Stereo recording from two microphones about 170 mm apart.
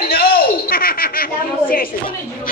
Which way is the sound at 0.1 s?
60° left (ahead or behind).